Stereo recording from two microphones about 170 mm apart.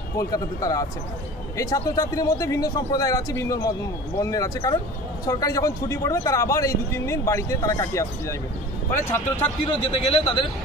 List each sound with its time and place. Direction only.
0.2 s speech: 20° left (ahead or behind)
9.7 s a man's voice: 35° left (ahead or behind)